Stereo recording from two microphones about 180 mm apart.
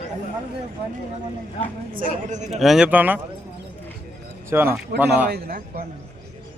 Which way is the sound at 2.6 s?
Centre (ahead or behind).